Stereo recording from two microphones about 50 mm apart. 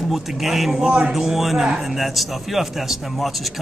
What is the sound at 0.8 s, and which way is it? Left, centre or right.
Speech, centre.